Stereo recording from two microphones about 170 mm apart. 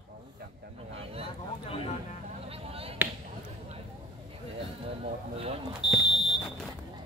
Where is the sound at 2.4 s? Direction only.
35° right (ahead or behind).